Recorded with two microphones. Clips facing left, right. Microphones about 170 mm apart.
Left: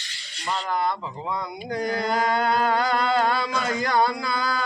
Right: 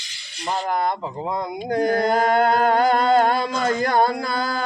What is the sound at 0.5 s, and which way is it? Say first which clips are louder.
Speech: right 3 dB; 50° right (ahead or behind).